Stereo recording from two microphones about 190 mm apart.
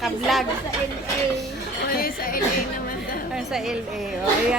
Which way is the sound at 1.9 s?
50° left (ahead or behind).